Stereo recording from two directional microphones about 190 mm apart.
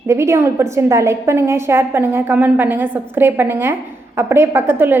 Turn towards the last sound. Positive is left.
turn(degrees=-10)  # may be behind; listen again after turning